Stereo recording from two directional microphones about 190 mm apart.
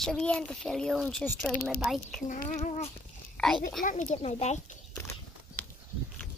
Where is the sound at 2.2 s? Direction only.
40° left (ahead or behind).